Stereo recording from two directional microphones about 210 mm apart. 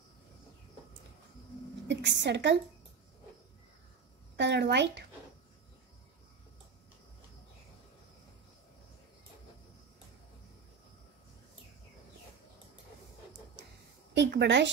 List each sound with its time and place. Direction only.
1.9 s a woman's voice: 55° right (ahead or behind)
4.4 s a woman's voice: 55° right (ahead or behind)
14.1 s a woman's voice: 55° right (ahead or behind)